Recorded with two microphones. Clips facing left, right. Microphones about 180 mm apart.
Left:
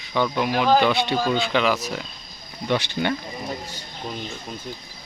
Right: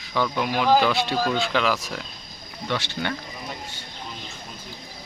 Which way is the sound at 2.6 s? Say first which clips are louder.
Left 5 dB; 15° left (ahead or behind).